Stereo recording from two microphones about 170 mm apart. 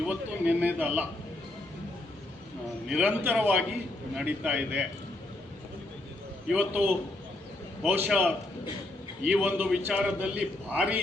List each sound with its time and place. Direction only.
0.1 s a man's voice: 10° right (ahead or behind)
2.8 s a man's voice: 5° right (ahead or behind)
6.5 s a man's voice: 10° right (ahead or behind)